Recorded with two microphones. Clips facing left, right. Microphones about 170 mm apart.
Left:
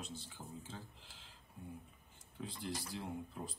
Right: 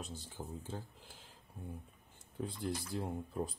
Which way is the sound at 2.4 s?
50° right (ahead or behind).